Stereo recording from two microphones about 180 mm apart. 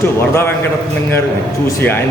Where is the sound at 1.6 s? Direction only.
15° left (ahead or behind).